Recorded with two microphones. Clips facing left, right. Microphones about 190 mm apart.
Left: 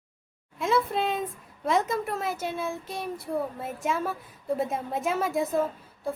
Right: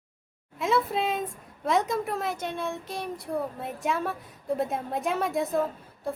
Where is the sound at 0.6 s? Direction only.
Centre (ahead or behind).